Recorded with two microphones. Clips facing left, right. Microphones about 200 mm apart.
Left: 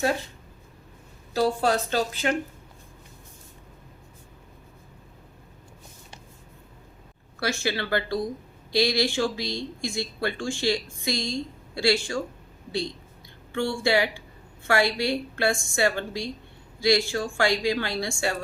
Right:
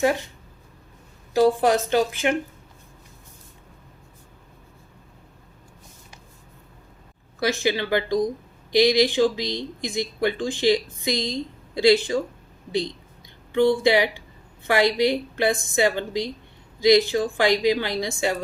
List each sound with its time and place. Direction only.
1.3 s speech: 15° right (ahead or behind)
7.3 s a woman's voice: 15° right (ahead or behind)
13.5 s a woman's voice: 20° right (ahead or behind)